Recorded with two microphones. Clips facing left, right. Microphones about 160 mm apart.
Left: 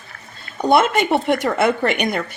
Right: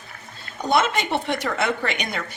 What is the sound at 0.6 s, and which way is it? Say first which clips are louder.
A woman's voice: left 6 dB; 55° left (ahead or behind).